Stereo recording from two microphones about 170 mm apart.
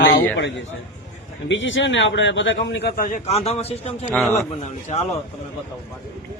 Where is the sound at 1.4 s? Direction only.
90° left.